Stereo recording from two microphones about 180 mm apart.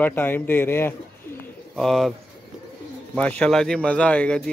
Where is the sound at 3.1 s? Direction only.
5° left (ahead or behind).